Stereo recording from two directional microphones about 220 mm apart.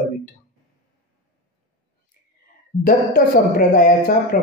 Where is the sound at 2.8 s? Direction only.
40° left (ahead or behind).